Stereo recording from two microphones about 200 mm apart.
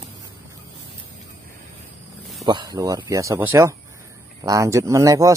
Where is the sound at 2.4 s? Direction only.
20° right (ahead or behind).